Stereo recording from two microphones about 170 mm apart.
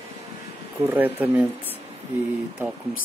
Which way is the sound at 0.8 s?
10° right (ahead or behind).